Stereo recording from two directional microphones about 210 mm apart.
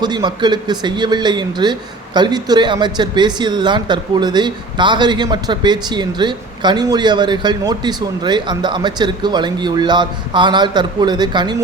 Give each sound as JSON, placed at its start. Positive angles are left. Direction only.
{"t": 0.0, "sound": "speech", "side_deg": -20}